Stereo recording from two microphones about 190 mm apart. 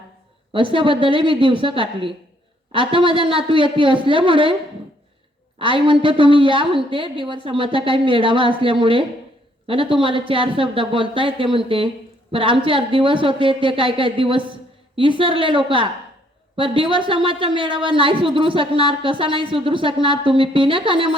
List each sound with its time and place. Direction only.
0.5 s speech: 25° right (ahead or behind)
5.5 s speech: 25° right (ahead or behind)